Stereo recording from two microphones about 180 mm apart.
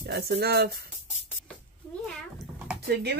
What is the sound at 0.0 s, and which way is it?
Speech, 65° right (ahead or behind).